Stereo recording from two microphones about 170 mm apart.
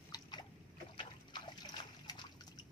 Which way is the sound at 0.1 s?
25° left (ahead or behind).